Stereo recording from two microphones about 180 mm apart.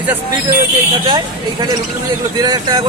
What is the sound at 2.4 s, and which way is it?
Speech, 20° right (ahead or behind).